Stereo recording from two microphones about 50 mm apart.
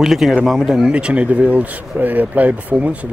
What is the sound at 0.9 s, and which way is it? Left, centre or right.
Speech, right.